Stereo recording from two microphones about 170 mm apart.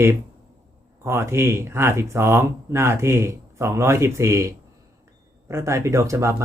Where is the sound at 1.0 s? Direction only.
15° right (ahead or behind).